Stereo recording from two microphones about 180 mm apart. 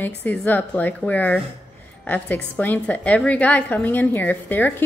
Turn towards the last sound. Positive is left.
turn(degrees=10)  # may be behind; listen again after turning